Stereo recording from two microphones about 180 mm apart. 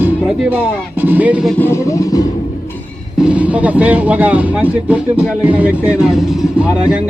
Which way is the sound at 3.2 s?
5° right (ahead or behind).